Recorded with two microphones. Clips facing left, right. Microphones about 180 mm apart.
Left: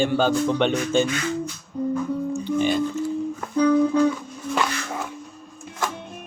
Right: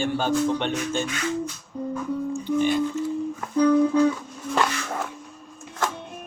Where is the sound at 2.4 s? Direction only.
90° left.